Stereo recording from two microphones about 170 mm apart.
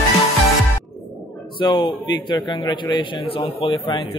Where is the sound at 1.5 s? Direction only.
30° left (ahead or behind).